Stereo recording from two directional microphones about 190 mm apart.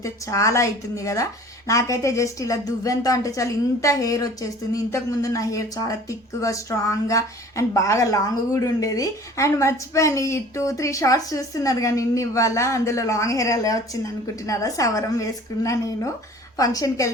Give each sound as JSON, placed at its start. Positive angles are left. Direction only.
{"t": 0.0, "sound": "a woman's voice", "side_deg": 15}